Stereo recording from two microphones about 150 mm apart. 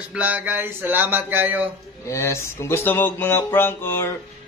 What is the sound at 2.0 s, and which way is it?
Speech, 20° left (ahead or behind).